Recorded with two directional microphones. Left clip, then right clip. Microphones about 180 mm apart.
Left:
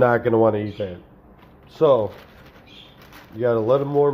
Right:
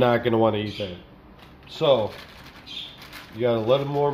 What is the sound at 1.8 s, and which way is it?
Speech, 25° left (ahead or behind).